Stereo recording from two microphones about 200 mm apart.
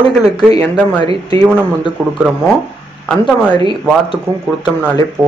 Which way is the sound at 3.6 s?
25° left (ahead or behind).